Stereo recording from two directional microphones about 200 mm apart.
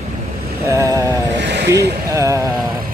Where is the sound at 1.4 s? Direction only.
60° right (ahead or behind).